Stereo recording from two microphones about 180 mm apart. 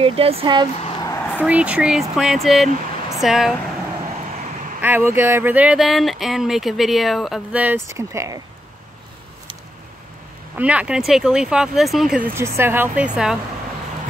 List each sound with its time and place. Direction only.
0.0 s speech: 35° right (ahead or behind)
1.0 s a sound: 15° left (ahead or behind)
1.4 s speech: 5° right (ahead or behind)
4.8 s speech: 10° right (ahead or behind)
10.5 s speech: 10° right (ahead or behind)
12.4 s speech: 15° right (ahead or behind)